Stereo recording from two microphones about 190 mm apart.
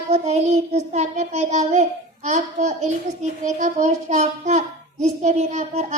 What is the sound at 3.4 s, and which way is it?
Child singing, 40° right (ahead or behind).